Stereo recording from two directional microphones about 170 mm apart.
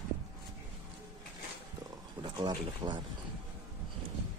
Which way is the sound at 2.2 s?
25° right (ahead or behind).